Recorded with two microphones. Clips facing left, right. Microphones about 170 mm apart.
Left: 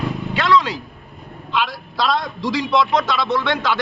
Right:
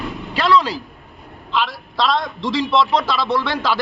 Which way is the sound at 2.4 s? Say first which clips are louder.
Right 1 dB; 25° right (ahead or behind).